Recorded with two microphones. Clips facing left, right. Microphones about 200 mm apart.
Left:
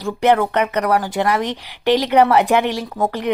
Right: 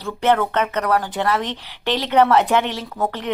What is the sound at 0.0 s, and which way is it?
Speech, 10° left (ahead or behind).